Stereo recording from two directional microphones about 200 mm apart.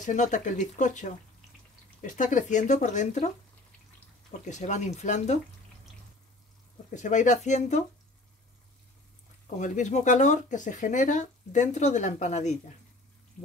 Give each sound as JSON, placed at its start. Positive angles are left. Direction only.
{"t": 0.0, "sound": "speech", "side_deg": 40}
{"t": 4.5, "sound": "speech", "side_deg": 35}
{"t": 6.9, "sound": "speech", "side_deg": 40}
{"t": 9.6, "sound": "speech", "side_deg": 40}